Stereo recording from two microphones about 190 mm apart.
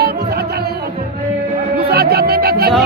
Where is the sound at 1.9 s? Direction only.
55° right (ahead or behind).